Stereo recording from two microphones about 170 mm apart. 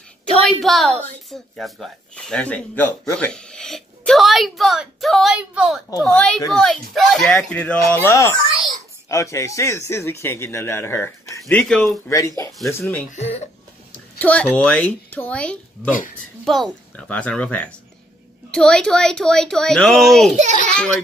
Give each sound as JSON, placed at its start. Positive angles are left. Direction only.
{"t": 0.4, "sound": "speech", "side_deg": 0}
{"t": 5.9, "sound": "a child's voice", "side_deg": 20}
{"t": 6.1, "sound": "speech", "side_deg": 5}
{"t": 11.5, "sound": "speech", "side_deg": 5}
{"t": 13.1, "sound": "speech", "side_deg": 40}
{"t": 14.2, "sound": "speech", "side_deg": 10}